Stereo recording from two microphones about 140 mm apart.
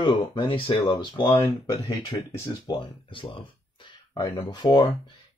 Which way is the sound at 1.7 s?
30° left (ahead or behind).